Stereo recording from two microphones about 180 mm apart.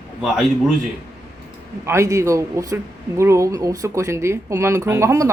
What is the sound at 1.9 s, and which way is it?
Speech, 15° right (ahead or behind).